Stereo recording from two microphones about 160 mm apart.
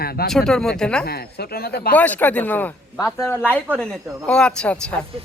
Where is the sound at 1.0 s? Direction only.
75° left (ahead or behind).